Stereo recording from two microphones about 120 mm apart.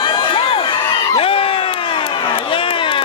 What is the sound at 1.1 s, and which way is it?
Crowd, 50° left (ahead or behind).